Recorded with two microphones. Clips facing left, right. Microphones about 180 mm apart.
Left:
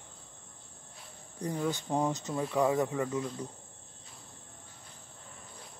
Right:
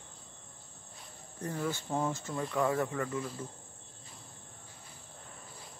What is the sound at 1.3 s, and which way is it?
Speech, 15° left (ahead or behind).